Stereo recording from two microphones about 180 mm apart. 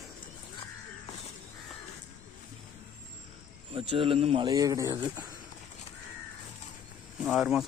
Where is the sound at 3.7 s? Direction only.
30° right (ahead or behind).